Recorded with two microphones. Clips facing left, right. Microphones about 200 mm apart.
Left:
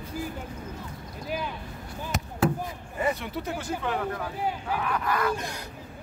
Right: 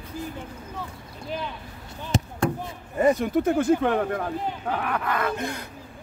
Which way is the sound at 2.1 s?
30° right (ahead or behind).